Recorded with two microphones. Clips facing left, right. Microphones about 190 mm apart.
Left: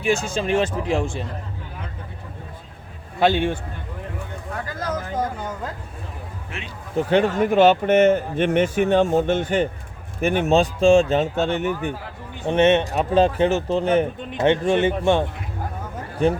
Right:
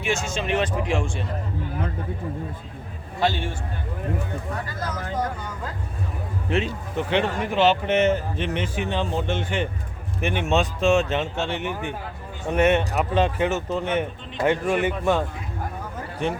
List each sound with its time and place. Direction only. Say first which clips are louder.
0.0 s speech: left 4 dB; 35° left (ahead or behind)
3.2 s a man's voice: left 6 dB; 60° left (ahead or behind)
6.9 s speech: left 5 dB; 45° left (ahead or behind)
12.5 s speech: left 3 dB; 25° left (ahead or behind)
13.1 s speech: left 6 dB; 30° left (ahead or behind)